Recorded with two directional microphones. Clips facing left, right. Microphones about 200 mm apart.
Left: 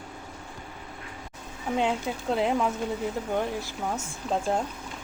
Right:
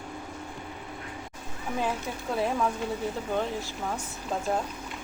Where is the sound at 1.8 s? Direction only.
25° left (ahead or behind).